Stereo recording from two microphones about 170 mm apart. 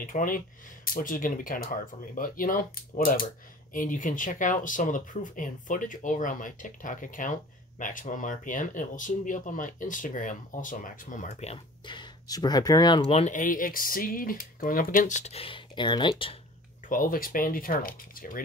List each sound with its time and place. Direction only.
0.0 s speech: 55° left (ahead or behind); by 13.2 s 25° left (ahead or behind)
13.2 s speech: 50° left (ahead or behind); by 16.3 s 30° left (ahead or behind)
16.9 s speech: 55° left (ahead or behind)